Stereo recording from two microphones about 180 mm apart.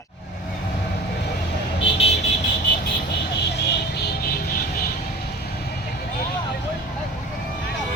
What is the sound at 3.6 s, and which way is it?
Vehicle, 65° left (ahead or behind).